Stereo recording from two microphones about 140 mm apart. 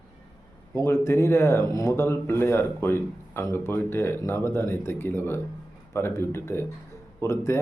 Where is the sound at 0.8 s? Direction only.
20° left (ahead or behind).